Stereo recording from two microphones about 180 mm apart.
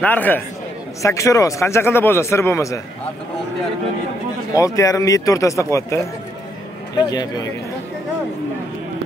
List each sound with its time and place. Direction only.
0.0 s speech: 10° left (ahead or behind)
4.5 s speech: 20° left (ahead or behind)